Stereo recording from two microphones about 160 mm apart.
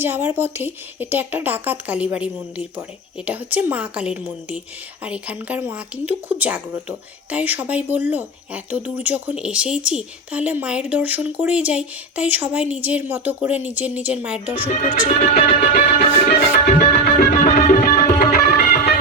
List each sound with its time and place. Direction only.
0.0 s speech: 15° right (ahead or behind)
14.8 s music: 50° left (ahead or behind)
16.0 s music: 45° left (ahead or behind)
16.6 s music: 70° left (ahead or behind)